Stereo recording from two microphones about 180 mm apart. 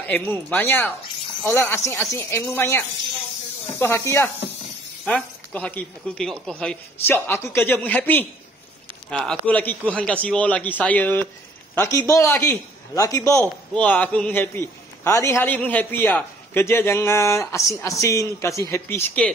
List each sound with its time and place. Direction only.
0.0 s a man's voice: 10° left (ahead or behind)
3.8 s a man's voice: 15° left (ahead or behind)